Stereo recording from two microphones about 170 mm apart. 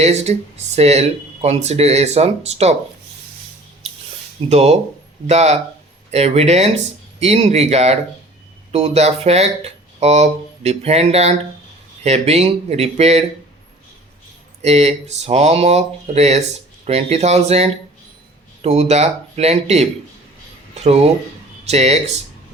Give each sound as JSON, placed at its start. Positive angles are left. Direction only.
{"t": 0.0, "sound": "speech", "side_deg": -40}
{"t": 4.4, "sound": "speech", "side_deg": -40}
{"t": 14.6, "sound": "speech", "side_deg": -40}